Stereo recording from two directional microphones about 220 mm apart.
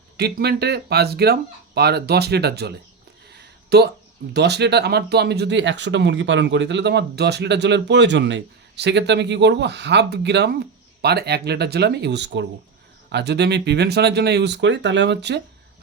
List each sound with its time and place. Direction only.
0.2 s speech: 45° right (ahead or behind)